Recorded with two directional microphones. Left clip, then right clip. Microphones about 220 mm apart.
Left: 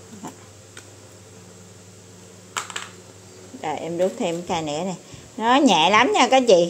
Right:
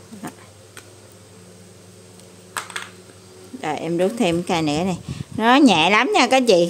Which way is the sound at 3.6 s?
20° right (ahead or behind).